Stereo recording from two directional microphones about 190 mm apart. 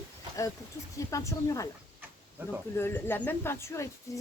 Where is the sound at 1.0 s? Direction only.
15° left (ahead or behind).